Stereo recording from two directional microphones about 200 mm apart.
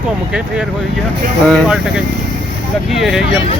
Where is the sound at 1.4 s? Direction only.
Centre (ahead or behind).